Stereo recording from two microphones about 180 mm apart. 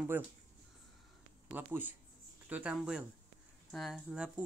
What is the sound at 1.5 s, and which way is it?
Speech, 10° right (ahead or behind).